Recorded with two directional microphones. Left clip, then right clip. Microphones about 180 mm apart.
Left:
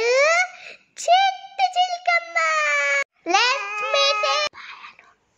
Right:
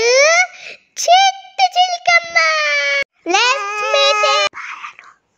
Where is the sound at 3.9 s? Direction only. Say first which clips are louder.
Right 7 dB; 30° right (ahead or behind).